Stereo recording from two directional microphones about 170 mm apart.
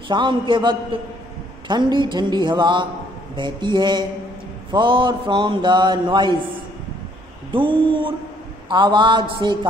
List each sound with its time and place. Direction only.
0.1 s a man's voice: 30° right (ahead or behind)
7.5 s mantra: 30° right (ahead or behind)
8.6 s a man's voice: 30° right (ahead or behind)